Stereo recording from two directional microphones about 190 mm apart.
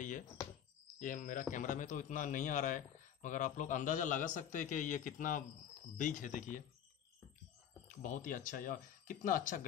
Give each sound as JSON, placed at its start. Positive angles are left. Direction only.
{"t": 0.9, "sound": "a man's voice", "side_deg": 45}
{"t": 7.9, "sound": "a man's voice", "side_deg": 45}